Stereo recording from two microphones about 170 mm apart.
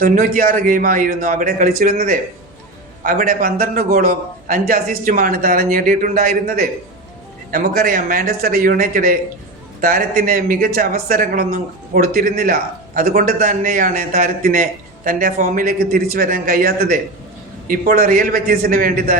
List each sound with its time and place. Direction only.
0.0 s a man's voice: 55° right (ahead or behind)